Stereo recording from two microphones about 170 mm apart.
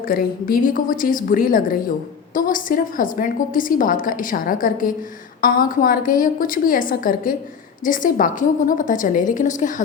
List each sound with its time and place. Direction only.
0.1 s a woman's voice: 60° left (ahead or behind)